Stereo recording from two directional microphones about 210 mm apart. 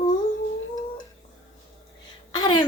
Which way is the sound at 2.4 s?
20° left (ahead or behind).